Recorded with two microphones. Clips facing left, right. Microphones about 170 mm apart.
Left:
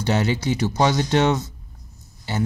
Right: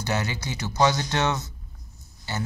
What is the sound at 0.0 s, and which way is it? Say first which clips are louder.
Speech: left 7 dB; 30° left (ahead or behind).